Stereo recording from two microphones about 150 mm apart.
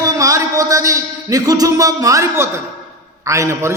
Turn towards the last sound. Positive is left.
turn(degrees=-20)  # may be behind; listen again after turning